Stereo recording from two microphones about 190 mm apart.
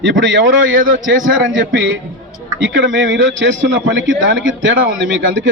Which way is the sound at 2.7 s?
80° right.